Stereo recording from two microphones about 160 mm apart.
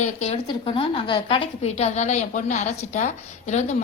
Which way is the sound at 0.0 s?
45° left (ahead or behind).